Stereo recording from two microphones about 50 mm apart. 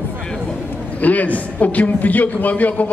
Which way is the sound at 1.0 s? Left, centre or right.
Left.